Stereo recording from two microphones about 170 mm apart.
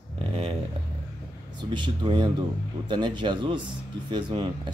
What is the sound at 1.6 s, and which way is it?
A man's voice, 25° right (ahead or behind).